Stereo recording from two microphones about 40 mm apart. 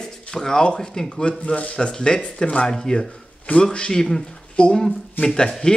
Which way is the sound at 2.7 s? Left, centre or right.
Centre.